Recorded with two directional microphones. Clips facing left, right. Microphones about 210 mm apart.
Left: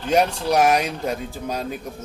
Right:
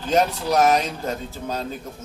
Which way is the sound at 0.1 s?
10° left (ahead or behind).